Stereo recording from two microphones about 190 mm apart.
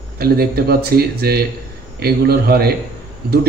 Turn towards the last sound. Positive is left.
turn(degrees=-55)  # may be behind; listen again after turning